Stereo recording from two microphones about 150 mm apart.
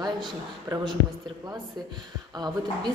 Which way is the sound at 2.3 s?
30° right (ahead or behind).